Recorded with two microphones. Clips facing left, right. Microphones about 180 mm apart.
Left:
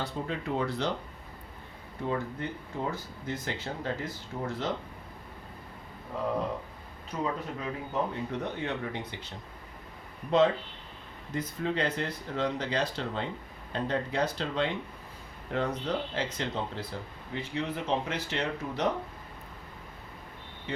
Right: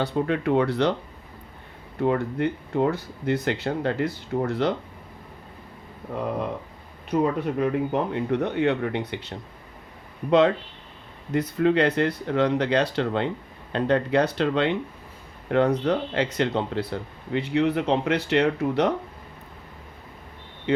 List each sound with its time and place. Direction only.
0.0 s speech: 70° right (ahead or behind)
2.0 s speech: 70° right (ahead or behind)
7.1 s speech: 65° right (ahead or behind)
20.7 s speech: 65° right (ahead or behind)